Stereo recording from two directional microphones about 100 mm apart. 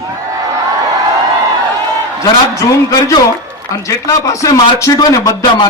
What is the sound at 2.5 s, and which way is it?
A man's voice, 30° left (ahead or behind).